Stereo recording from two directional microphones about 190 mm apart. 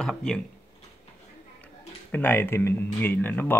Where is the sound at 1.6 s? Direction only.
10° left (ahead or behind).